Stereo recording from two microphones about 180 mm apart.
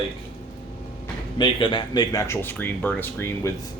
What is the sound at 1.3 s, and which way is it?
Speech, 25° left (ahead or behind).